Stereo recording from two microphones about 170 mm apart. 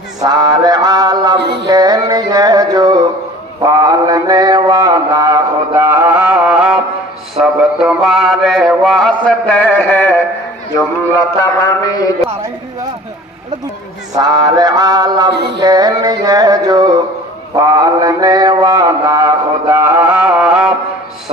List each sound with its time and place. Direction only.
0.2 s mantra: 25° right (ahead or behind)
1.7 s music: 20° right (ahead or behind)
3.6 s mantra: 20° right (ahead or behind); by 10.2 s 10° left (ahead or behind)
11.6 s a man's voice: 20° left (ahead or behind)
14.2 s music: 25° right (ahead or behind)
17.6 s mantra: 20° right (ahead or behind); by 20.7 s 5° right (ahead or behind)